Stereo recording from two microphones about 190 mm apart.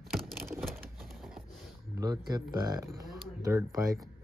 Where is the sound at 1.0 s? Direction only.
Centre (ahead or behind).